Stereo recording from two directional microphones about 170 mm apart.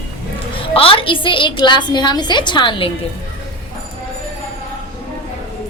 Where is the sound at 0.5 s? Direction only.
30° left (ahead or behind).